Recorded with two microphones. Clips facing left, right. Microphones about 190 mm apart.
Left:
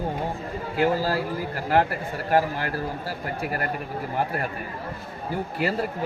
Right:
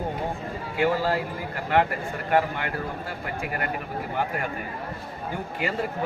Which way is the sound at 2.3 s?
35° left (ahead or behind).